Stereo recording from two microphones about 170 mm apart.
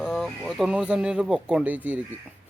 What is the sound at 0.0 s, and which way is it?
Speech, 5° right (ahead or behind).